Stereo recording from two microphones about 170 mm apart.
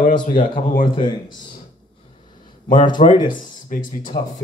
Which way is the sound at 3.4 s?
50° left (ahead or behind).